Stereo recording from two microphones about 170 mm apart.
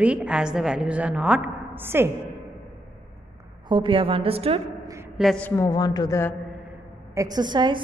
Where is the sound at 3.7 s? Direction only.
30° right (ahead or behind).